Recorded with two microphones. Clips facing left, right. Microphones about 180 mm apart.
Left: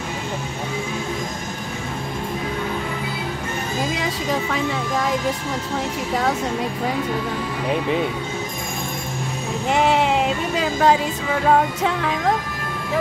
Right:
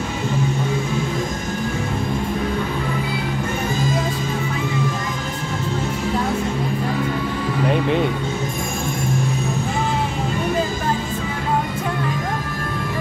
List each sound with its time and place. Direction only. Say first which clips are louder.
3.9 s music: even; 85° left
9.7 s music: left 5 dB; 90° left